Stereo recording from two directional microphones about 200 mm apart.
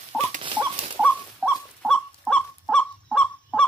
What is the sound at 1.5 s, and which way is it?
Goose, centre (ahead or behind).